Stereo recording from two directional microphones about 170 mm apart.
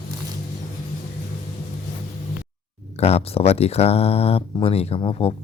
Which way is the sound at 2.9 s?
35° left (ahead or behind).